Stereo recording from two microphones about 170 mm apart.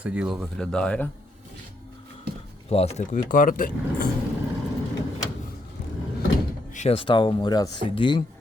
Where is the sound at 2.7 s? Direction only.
35° left (ahead or behind); by 4.0 s 55° left (ahead or behind).